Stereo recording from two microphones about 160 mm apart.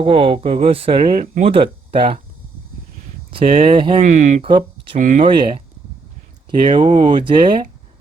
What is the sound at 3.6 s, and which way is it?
Speech, 30° right (ahead or behind).